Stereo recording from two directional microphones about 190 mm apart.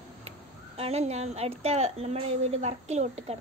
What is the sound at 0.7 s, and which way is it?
A child's voice, 35° right (ahead or behind).